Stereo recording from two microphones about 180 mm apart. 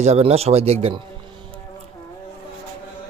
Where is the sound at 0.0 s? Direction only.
35° right (ahead or behind).